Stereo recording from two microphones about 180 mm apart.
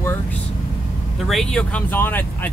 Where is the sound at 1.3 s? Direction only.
Centre (ahead or behind).